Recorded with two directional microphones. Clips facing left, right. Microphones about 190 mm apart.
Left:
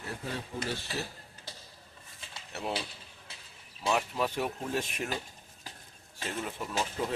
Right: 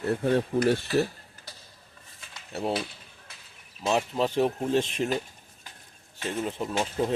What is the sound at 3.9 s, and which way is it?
Speech, 25° right (ahead or behind).